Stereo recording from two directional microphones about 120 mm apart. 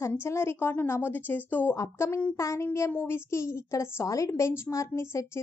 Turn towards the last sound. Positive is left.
turn(degrees=25)  # may be behind; listen again after turning